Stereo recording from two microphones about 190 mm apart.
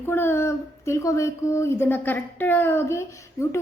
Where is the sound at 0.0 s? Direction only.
10° left (ahead or behind).